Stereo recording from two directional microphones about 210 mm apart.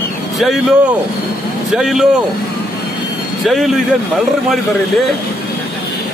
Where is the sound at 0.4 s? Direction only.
Centre (ahead or behind).